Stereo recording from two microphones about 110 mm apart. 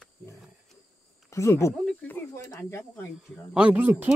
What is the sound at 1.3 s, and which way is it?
Speech, 25° left (ahead or behind).